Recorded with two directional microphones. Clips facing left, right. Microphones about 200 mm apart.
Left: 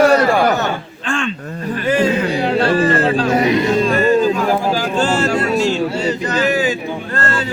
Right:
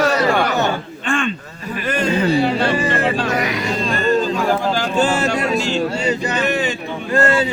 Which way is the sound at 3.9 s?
5° left (ahead or behind).